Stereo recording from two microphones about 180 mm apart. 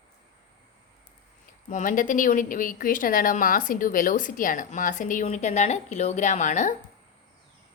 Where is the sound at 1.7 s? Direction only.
45° left (ahead or behind).